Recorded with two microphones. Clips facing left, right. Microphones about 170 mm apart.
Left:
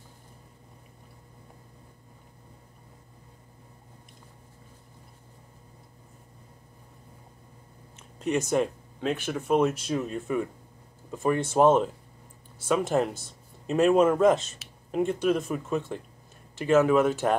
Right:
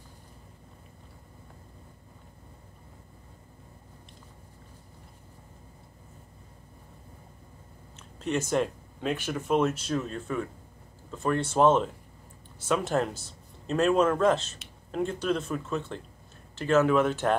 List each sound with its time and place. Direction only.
8.2 s speech: 5° left (ahead or behind)